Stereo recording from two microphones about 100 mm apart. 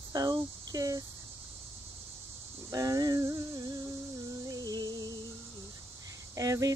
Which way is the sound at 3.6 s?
40° right (ahead or behind).